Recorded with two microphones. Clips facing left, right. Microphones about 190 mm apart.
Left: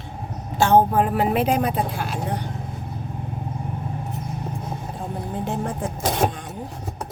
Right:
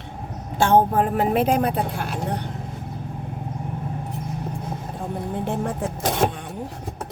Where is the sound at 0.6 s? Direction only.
55° right (ahead or behind).